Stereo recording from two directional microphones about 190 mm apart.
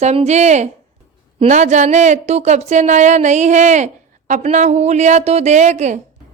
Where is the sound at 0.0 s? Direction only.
35° right (ahead or behind).